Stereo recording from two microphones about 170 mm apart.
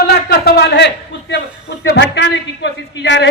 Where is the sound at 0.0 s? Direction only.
70° left (ahead or behind).